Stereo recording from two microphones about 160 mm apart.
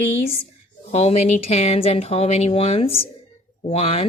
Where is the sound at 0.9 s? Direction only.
40° left (ahead or behind).